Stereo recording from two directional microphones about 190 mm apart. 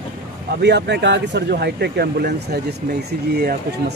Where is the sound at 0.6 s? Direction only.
65° right (ahead or behind).